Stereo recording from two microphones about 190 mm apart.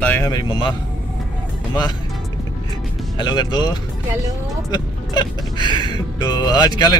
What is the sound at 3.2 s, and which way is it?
Speech, 25° left (ahead or behind).